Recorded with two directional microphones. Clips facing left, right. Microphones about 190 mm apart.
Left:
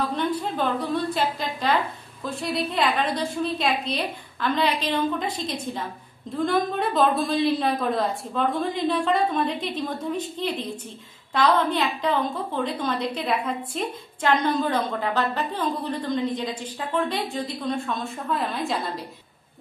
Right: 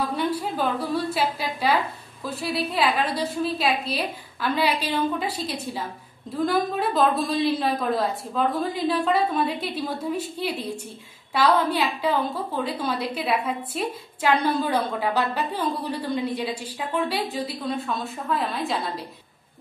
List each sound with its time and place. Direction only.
0.1 s a woman's voice: 10° right (ahead or behind)